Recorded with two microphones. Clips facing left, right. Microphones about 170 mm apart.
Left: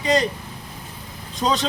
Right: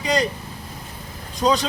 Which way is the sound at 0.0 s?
Centre (ahead or behind).